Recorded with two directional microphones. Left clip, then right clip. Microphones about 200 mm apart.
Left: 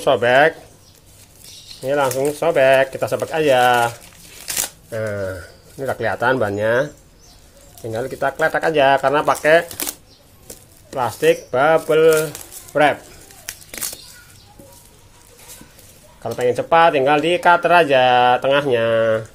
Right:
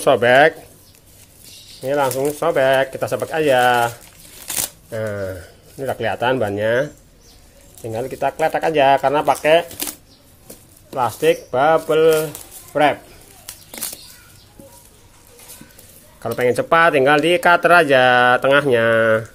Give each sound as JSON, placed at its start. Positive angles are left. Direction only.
{"t": 0.0, "sound": "speech", "side_deg": -20}
{"t": 1.8, "sound": "speech", "side_deg": -5}
{"t": 11.0, "sound": "speech", "side_deg": 0}
{"t": 16.2, "sound": "speech", "side_deg": -20}